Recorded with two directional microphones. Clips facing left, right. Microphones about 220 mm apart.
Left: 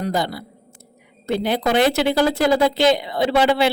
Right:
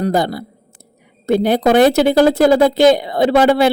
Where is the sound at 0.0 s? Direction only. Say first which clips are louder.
Right 6 dB; 45° right (ahead or behind).